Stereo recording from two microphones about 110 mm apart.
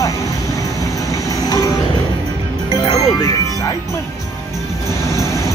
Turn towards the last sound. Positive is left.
turn(degrees=30)  # may be behind; listen again after turning